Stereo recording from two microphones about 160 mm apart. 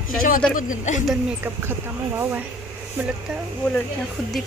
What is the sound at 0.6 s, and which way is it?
Speech, 50° left (ahead or behind).